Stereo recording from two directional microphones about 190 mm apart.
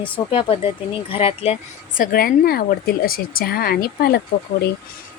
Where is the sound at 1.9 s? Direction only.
50° left (ahead or behind).